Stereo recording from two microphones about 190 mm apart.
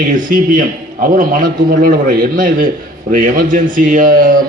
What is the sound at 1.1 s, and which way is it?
A man's voice, 45° right (ahead or behind).